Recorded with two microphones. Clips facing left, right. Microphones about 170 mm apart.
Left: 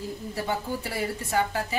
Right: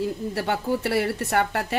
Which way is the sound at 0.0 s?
70° right (ahead or behind).